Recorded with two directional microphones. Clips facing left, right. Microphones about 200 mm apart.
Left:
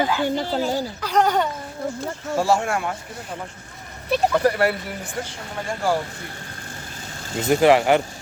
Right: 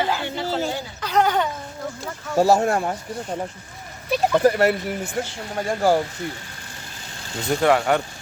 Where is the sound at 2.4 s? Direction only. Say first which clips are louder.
Right 4 dB; 40° right (ahead or behind).